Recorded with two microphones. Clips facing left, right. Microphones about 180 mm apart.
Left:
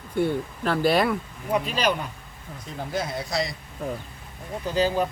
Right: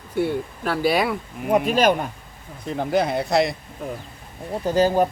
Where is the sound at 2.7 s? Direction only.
65° right (ahead or behind).